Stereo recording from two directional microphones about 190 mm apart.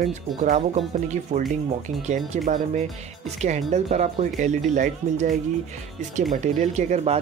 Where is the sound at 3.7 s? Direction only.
35° right (ahead or behind).